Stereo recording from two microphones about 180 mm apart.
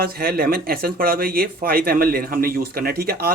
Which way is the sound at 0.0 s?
55° right (ahead or behind).